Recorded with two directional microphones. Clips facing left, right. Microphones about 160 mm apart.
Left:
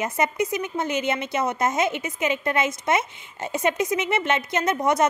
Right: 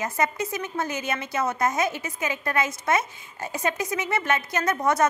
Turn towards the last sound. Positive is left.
turn(degrees=20)  # may be behind; listen again after turning